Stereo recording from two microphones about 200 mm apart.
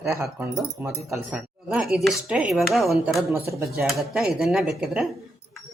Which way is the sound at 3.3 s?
15° right (ahead or behind).